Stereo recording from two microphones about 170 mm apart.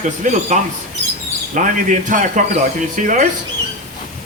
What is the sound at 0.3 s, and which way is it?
A man's voice, 45° right (ahead or behind).